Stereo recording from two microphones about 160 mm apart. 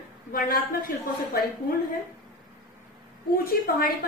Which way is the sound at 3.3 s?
70° left (ahead or behind).